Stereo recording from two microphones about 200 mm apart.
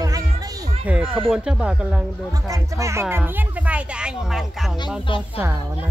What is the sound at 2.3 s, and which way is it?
Speech, 15° right (ahead or behind).